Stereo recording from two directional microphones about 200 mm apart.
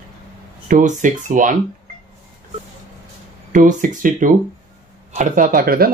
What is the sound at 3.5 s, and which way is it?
Speech, 40° right (ahead or behind).